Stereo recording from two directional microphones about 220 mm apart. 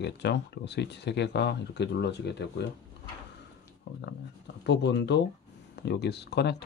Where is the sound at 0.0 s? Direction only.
50° left (ahead or behind).